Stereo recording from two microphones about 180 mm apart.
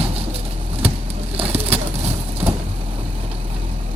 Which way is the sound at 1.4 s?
35° right (ahead or behind).